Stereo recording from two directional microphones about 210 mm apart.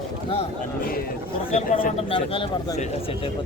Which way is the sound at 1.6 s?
35° left (ahead or behind).